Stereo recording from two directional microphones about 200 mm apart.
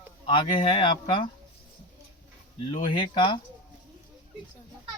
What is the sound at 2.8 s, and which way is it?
Speech, 25° left (ahead or behind).